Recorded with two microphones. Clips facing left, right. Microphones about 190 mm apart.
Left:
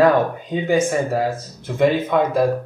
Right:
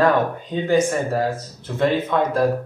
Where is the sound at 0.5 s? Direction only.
10° left (ahead or behind).